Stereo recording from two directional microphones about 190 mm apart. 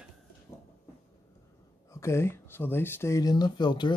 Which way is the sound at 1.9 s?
15° left (ahead or behind).